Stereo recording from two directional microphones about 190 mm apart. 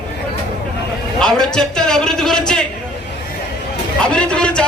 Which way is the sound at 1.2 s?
5° left (ahead or behind).